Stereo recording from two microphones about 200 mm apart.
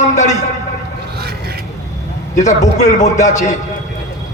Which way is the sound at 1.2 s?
50° right (ahead or behind).